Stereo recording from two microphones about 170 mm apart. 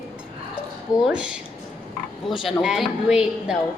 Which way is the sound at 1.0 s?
5° right (ahead or behind).